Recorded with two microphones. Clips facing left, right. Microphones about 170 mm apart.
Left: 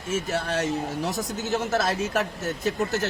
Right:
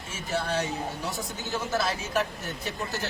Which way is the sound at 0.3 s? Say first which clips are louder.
Right 1 dB; 45° left (ahead or behind).